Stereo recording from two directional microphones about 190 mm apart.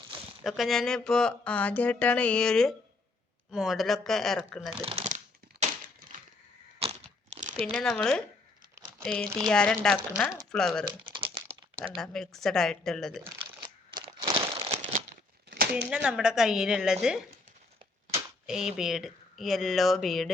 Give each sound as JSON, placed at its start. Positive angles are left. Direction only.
{"t": 0.4, "sound": "speech", "side_deg": 0}
{"t": 4.8, "sound": "a sound", "side_deg": -30}
{"t": 6.7, "sound": "crunch", "side_deg": -35}
{"t": 7.6, "sound": "speech", "side_deg": 5}
{"t": 8.7, "sound": "crumpling", "side_deg": -15}
{"t": 9.0, "sound": "speech", "side_deg": 5}
{"t": 10.8, "sound": "crumpling", "side_deg": -25}
{"t": 11.9, "sound": "speech", "side_deg": 5}
{"t": 13.9, "sound": "crumpling", "side_deg": -20}
{"t": 15.4, "sound": "a sound", "side_deg": -55}
{"t": 16.0, "sound": "speech", "side_deg": -5}
{"t": 18.4, "sound": "speech", "side_deg": -5}